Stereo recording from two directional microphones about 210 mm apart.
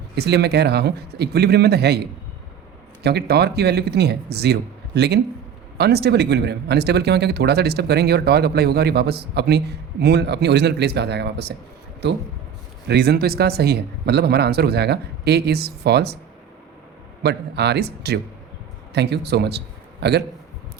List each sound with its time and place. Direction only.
0.2 s speech: 50° right (ahead or behind)
3.0 s speech: 50° right (ahead or behind)
12.9 s speech: 50° right (ahead or behind)
17.2 s a man's voice: 50° right (ahead or behind)